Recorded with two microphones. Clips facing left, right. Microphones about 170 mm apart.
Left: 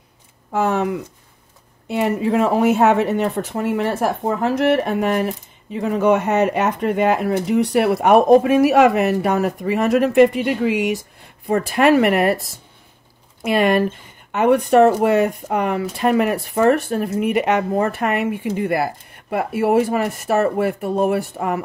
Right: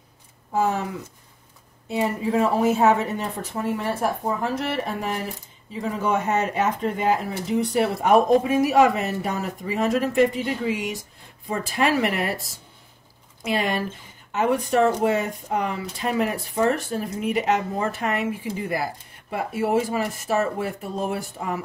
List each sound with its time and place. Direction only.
0.5 s speech: 75° left (ahead or behind)
13.4 s speech: 60° left (ahead or behind)